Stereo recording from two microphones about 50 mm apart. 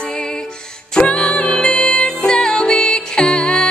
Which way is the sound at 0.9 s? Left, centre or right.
Left.